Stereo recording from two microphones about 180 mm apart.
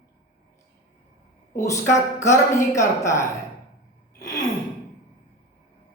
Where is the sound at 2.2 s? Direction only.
15° left (ahead or behind).